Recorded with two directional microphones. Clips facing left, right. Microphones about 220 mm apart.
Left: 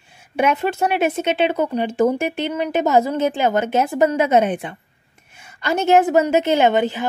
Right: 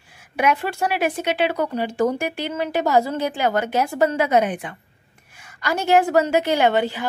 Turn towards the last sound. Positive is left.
turn(degrees=20)  # may be behind; listen again after turning